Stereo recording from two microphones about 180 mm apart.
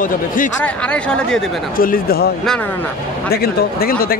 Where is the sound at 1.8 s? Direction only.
55° left (ahead or behind).